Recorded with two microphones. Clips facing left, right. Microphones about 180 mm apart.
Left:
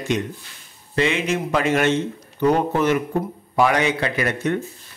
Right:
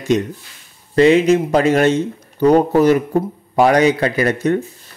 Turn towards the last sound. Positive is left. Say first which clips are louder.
# right 6 dB
turn(degrees=-40)  # may be behind; listen again after turning